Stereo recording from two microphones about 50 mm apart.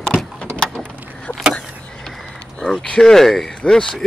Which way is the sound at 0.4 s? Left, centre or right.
Left.